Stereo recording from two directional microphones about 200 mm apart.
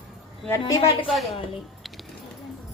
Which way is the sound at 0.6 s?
25° left (ahead or behind).